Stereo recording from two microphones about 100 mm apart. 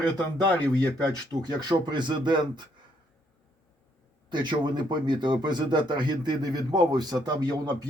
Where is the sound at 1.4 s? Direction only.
45° right (ahead or behind).